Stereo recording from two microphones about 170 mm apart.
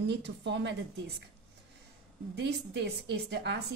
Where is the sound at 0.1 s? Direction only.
90° right.